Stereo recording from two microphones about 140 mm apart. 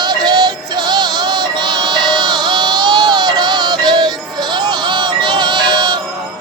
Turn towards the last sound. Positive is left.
turn(degrees=-30)  # may be behind; listen again after turning